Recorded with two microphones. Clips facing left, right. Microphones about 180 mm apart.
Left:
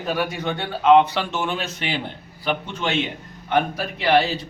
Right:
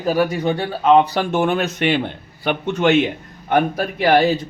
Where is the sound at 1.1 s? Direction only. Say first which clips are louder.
Right 7 dB; 55° right (ahead or behind).